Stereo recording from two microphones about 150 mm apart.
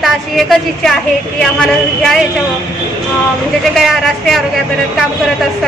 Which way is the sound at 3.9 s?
Centre (ahead or behind).